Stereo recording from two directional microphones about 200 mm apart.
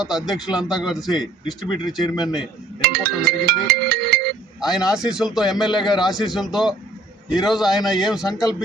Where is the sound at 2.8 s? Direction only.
50° right (ahead or behind).